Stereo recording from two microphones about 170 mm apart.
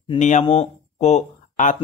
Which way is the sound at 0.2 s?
45° left (ahead or behind).